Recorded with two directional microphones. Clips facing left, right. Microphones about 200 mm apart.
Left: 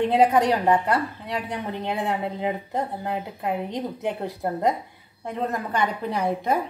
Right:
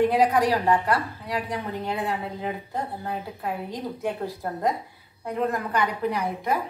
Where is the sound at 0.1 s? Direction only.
25° left (ahead or behind).